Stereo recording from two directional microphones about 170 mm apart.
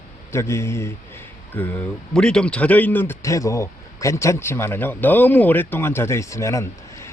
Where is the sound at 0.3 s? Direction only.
15° left (ahead or behind).